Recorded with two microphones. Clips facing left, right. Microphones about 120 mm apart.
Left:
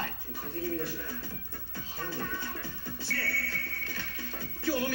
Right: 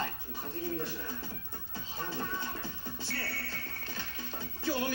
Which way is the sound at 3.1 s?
20° right (ahead or behind).